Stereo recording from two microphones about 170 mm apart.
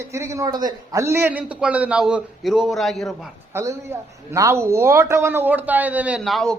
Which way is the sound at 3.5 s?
20° right (ahead or behind).